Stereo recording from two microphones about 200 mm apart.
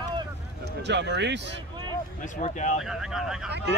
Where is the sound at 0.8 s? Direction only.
60° right (ahead or behind).